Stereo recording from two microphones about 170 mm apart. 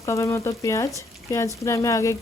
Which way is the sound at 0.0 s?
20° left (ahead or behind).